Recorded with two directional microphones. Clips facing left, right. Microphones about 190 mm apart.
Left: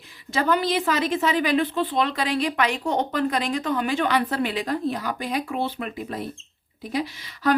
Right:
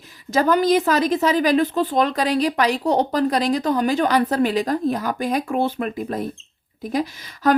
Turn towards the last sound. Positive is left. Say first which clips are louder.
# right 4 dB
turn(degrees=-45)  # may be behind; listen again after turning